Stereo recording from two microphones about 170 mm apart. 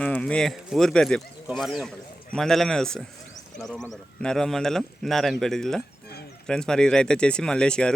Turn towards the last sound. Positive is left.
turn(degrees=5)  # may be behind; listen again after turning